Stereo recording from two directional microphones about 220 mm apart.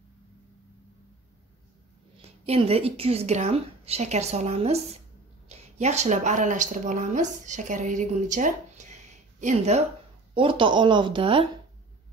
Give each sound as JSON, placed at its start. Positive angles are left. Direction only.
{"t": 2.2, "sound": "a woman's voice", "side_deg": -25}